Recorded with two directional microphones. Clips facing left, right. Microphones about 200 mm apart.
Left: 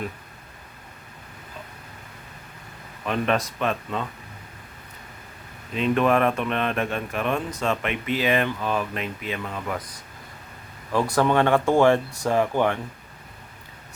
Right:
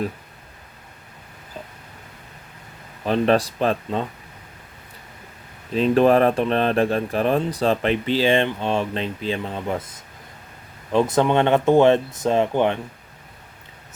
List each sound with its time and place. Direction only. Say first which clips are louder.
3.0 s speech: right 6 dB; 30° right (ahead or behind)
5.7 s speech: right 5 dB; 35° right (ahead or behind)
10.9 s speech: right 3 dB; 20° right (ahead or behind)